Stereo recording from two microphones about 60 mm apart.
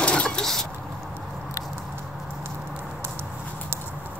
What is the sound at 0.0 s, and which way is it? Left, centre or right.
Vehicle, centre.